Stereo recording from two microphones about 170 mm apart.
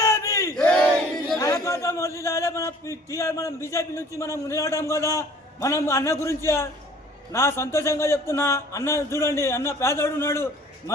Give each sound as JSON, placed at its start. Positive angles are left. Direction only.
{"t": 0.0, "sound": "battle cry", "side_deg": 20}
{"t": 0.5, "sound": "battle cry", "side_deg": 5}
{"t": 1.4, "sound": "a man's voice", "side_deg": 20}